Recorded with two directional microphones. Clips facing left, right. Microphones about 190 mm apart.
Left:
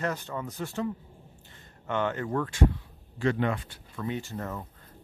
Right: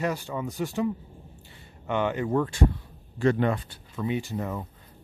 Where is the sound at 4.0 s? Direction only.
15° right (ahead or behind).